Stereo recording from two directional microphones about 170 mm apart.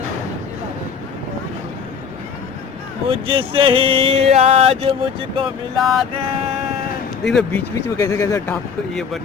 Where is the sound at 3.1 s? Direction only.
30° right (ahead or behind).